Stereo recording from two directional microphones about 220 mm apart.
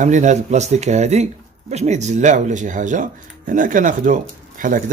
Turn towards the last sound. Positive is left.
turn(degrees=-35)  # may be behind; listen again after turning